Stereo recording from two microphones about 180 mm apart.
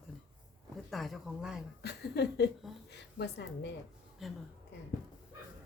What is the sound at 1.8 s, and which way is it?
A woman's voice, 65° left (ahead or behind).